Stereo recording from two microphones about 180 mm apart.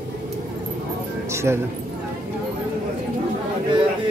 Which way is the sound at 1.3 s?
15° right (ahead or behind).